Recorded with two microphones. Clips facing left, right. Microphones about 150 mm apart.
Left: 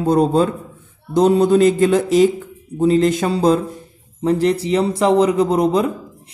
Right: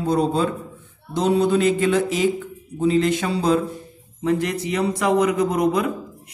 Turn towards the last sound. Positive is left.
turn(degrees=30)  # may be behind; listen again after turning